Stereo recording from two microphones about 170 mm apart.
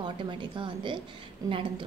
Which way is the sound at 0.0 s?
30° right (ahead or behind).